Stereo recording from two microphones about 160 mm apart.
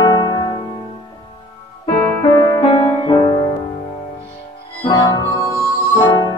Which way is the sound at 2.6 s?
30° left (ahead or behind).